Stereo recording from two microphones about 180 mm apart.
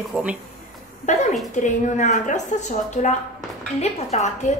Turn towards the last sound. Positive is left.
turn(degrees=40)  # may be behind; listen again after turning